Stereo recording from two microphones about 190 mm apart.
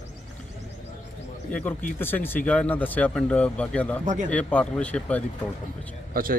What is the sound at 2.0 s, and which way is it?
Speech, 10° left (ahead or behind).